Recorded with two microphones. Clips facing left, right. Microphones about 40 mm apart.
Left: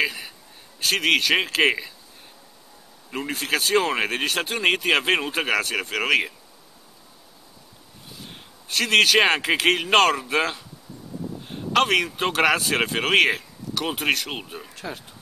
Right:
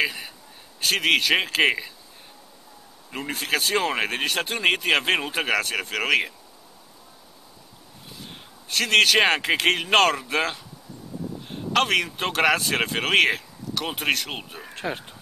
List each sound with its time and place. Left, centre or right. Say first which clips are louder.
0.0 s a man's voice: left 1 dB; centre
3.1 s speech: left 1 dB; centre
8.2 s a man's voice: even; centre
14.7 s speech: right 4 dB; right